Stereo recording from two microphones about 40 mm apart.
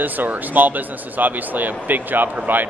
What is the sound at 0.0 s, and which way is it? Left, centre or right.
Speech, right.